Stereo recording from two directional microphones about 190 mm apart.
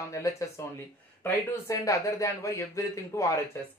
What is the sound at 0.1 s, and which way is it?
Speech, 15° left (ahead or behind).